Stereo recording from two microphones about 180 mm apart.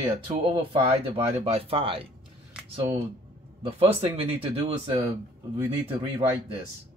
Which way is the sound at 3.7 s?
35° right (ahead or behind).